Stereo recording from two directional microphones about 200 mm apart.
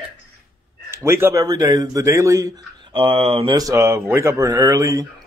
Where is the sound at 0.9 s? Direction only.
15° right (ahead or behind).